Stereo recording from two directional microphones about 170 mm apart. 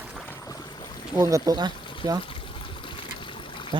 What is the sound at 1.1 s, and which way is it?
Speech, 20° right (ahead or behind).